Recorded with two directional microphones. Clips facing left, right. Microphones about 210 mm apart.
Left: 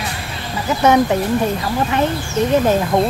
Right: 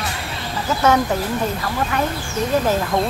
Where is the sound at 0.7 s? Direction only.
15° left (ahead or behind).